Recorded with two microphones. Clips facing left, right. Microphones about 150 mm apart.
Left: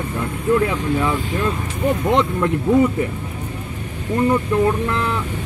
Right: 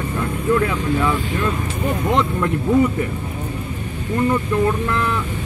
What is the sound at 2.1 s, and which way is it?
Speech, 20° left (ahead or behind).